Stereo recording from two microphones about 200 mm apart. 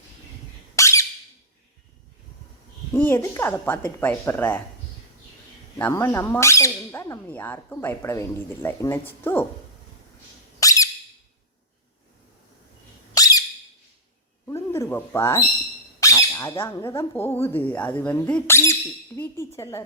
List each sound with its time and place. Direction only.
0.8 s squeak: 15° left (ahead or behind)
2.9 s speech: 10° left (ahead or behind)
5.7 s speech: 10° left (ahead or behind)
10.6 s squeak: 15° left (ahead or behind)
13.1 s squeak: 20° left (ahead or behind)
14.4 s a sound: 15° left (ahead or behind)
16.0 s speech: 15° left (ahead or behind)